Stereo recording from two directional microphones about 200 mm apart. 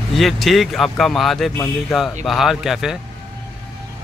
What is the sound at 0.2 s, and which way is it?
Speech, centre (ahead or behind).